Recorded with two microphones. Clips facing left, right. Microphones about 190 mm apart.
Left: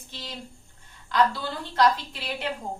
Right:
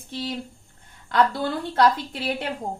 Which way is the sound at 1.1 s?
55° right (ahead or behind).